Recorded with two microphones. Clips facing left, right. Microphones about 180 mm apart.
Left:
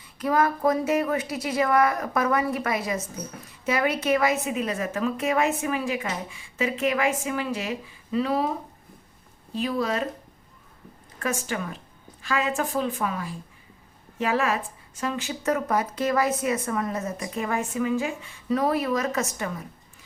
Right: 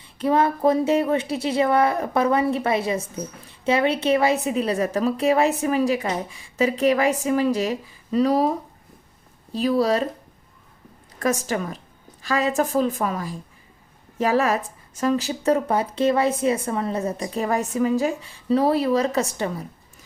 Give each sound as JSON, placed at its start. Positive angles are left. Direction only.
{"t": 0.0, "sound": "speech", "side_deg": -30}
{"t": 11.2, "sound": "speech", "side_deg": -40}